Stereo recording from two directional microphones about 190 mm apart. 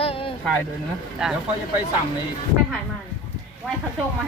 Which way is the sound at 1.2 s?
5° right (ahead or behind).